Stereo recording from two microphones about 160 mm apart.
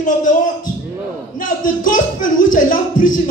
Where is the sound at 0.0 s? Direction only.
50° left (ahead or behind).